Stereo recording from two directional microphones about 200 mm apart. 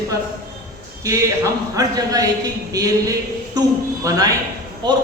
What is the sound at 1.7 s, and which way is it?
A man's voice, 20° right (ahead or behind).